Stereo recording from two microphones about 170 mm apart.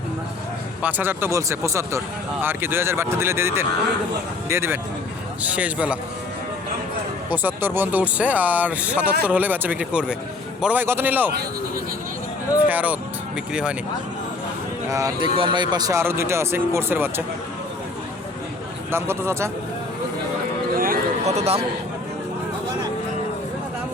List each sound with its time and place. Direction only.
0.8 s speech: 10° right (ahead or behind)
7.3 s speech: 10° right (ahead or behind)
12.6 s speech: 10° right (ahead or behind)
14.8 s speech: 20° right (ahead or behind)
18.9 s speech: 15° right (ahead or behind)
20.7 s a sound: 55° right (ahead or behind)
21.2 s a man's voice: 40° right (ahead or behind)